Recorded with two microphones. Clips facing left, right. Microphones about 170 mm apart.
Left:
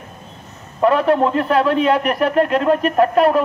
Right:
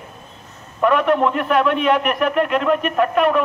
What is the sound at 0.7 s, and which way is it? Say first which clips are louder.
A man's voice: left 2 dB; 35° left (ahead or behind).